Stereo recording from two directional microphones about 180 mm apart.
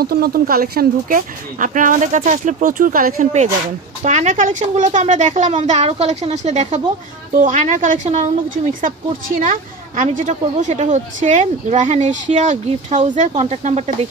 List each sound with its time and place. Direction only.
0.0 s a woman's voice: 55° right (ahead or behind); by 13.9 s 40° right (ahead or behind)